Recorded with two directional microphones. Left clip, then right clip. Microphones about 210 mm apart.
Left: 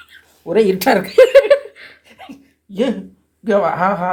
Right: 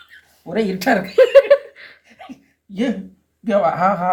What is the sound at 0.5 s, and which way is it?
Speech, 35° left (ahead or behind).